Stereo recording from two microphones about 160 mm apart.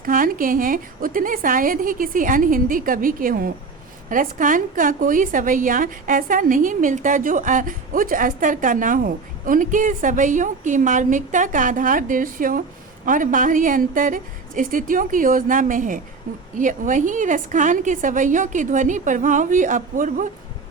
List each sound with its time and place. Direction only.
0.0 s a woman's voice: 60° right (ahead or behind)